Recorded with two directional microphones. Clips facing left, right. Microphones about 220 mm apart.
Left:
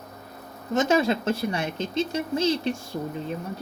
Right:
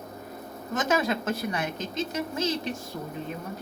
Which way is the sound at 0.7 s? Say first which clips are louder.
Left 5 dB; 25° left (ahead or behind).